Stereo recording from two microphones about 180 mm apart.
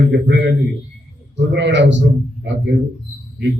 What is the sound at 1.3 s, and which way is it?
Speech, 80° right.